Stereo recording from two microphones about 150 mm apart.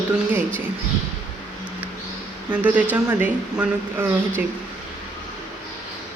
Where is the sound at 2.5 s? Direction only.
10° right (ahead or behind).